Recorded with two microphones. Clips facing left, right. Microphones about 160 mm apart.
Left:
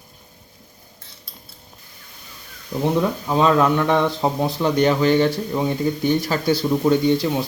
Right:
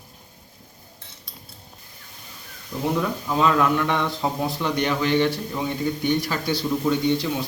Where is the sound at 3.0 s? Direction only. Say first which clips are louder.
Left 2 dB; 25° left (ahead or behind).